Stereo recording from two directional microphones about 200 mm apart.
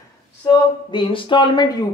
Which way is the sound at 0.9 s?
25° left (ahead or behind).